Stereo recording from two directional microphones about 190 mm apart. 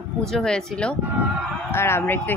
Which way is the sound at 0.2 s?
Centre (ahead or behind).